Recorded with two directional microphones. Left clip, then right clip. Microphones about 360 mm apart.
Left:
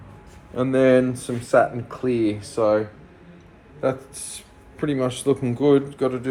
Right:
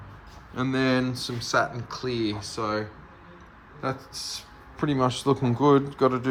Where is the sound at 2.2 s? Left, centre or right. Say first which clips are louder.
Left 6 dB; centre.